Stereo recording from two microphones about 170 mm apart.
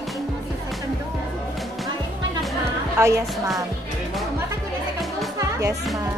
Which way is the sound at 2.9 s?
20° right (ahead or behind).